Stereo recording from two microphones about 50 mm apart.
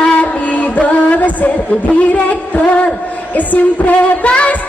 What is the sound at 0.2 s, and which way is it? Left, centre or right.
Train, left.